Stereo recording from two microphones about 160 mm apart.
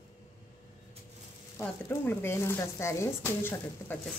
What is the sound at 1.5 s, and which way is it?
Speech, 15° left (ahead or behind).